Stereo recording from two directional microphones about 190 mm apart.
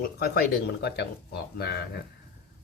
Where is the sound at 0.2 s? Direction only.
55° left (ahead or behind).